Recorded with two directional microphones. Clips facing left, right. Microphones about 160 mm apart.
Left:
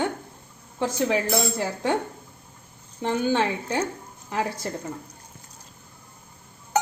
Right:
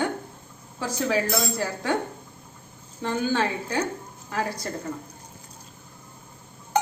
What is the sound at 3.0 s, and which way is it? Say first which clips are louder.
A woman's voice: left 2 dB; 25° left (ahead or behind).